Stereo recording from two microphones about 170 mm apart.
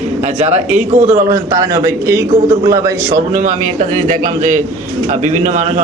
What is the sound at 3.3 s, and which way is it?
A man's voice, 50° right (ahead or behind).